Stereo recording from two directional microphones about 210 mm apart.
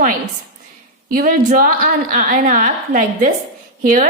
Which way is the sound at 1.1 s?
45° right (ahead or behind).